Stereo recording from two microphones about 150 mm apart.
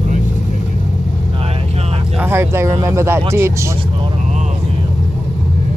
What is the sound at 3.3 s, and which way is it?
Speech, 15° right (ahead or behind).